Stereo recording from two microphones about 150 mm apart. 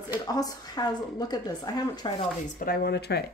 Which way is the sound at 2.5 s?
80° left.